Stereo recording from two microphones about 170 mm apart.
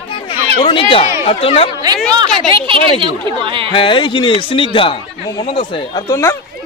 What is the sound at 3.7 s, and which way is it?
A man's voice, 30° left (ahead or behind).